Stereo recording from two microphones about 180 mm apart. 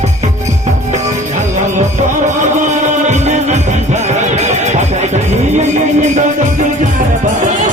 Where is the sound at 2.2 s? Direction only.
40° right (ahead or behind).